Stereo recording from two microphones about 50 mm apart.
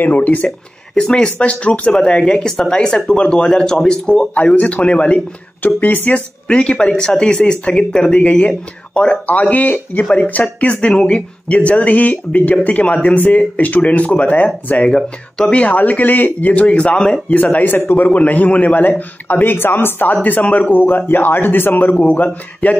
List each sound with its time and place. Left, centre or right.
0.0 s speech: left
0.9 s speech: centre
5.6 s speech: left
6.1 s speech: centre
14.9 s speech: centre
17.3 s speech: left
18.0 s speech: left
20.7 s speech: left